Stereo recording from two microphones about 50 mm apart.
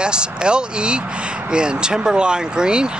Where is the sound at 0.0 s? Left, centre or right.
Centre.